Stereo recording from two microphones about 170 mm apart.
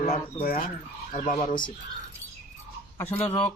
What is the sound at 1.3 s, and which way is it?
Speech, 25° left (ahead or behind).